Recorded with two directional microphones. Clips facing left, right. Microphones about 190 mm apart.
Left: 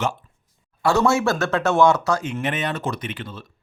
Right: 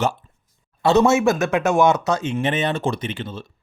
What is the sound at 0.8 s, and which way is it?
Speech, 20° right (ahead or behind).